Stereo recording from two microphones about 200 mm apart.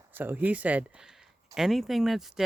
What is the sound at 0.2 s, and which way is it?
Speech, 10° right (ahead or behind).